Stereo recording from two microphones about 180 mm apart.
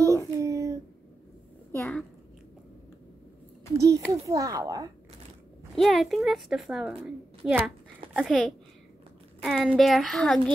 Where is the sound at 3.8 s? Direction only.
20° right (ahead or behind).